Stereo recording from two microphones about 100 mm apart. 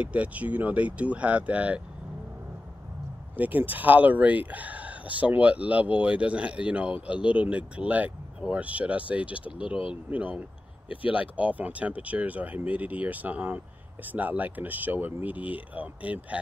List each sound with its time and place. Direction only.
0.0 s speech: 15° right (ahead or behind)
3.3 s speech: 15° right (ahead or behind)